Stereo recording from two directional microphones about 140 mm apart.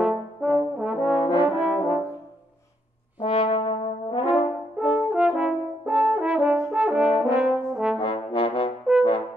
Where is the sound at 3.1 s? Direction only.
40° left (ahead or behind).